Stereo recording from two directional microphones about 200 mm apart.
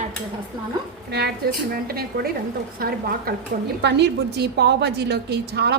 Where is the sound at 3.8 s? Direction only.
60° right (ahead or behind).